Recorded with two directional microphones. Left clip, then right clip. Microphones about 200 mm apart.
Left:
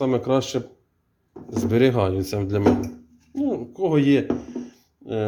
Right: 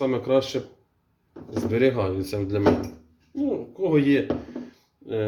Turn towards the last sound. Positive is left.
turn(degrees=40)  # may be behind; listen again after turning